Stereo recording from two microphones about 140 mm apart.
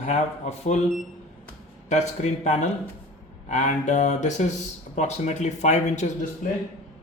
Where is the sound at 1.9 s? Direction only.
55° left (ahead or behind).